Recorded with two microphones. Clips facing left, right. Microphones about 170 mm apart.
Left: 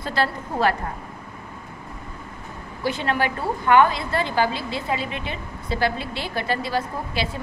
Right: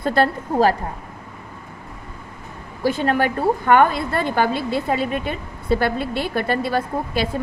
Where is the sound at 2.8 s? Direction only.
45° right (ahead or behind).